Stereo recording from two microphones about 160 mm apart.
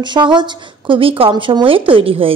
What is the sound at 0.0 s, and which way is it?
Speech, 30° right (ahead or behind).